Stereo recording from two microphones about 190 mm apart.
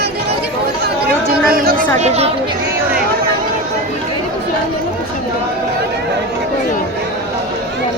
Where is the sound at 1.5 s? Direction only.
50° right (ahead or behind).